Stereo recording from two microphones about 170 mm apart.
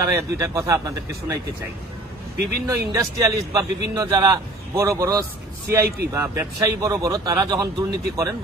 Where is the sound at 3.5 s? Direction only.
20° right (ahead or behind).